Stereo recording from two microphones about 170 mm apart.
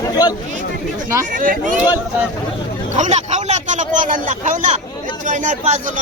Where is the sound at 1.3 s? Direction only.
50° right (ahead or behind).